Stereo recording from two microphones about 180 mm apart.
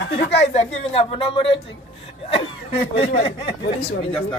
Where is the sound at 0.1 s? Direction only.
35° left (ahead or behind).